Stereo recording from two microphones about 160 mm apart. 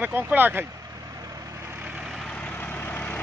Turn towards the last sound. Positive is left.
turn(degrees=10)  # may be behind; listen again after turning